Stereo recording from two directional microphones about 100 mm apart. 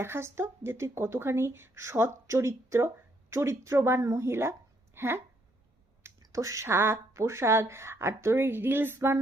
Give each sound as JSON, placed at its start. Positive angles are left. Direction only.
{"t": 0.0, "sound": "a woman's voice", "side_deg": -25}